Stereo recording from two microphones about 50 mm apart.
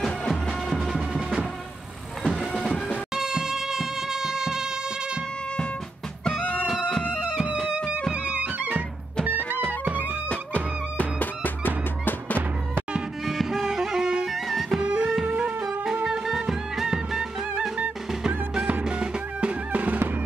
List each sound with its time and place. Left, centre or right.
0.3 s music: centre
6.4 s music: left
7.5 s music: centre
8.1 s music: right
10.0 s music: left
13.2 s music: centre
14.8 s music: right
18.5 s music: centre